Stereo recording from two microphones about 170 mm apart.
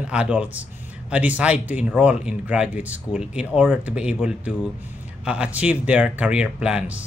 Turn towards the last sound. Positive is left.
turn(degrees=-5)  # may be behind; listen again after turning